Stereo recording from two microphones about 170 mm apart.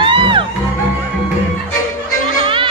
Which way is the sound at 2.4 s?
30° right (ahead or behind).